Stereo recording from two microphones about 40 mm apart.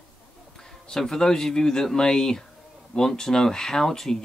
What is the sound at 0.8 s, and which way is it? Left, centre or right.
Speech, centre.